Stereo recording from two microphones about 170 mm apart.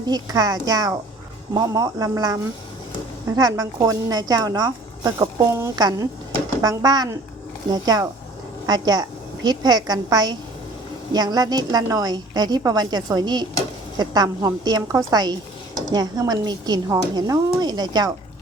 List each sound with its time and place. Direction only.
0.0 s a woman's voice: 25° right (ahead or behind)